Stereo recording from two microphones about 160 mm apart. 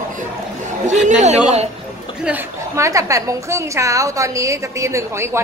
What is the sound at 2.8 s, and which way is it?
A woman's voice, 20° right (ahead or behind).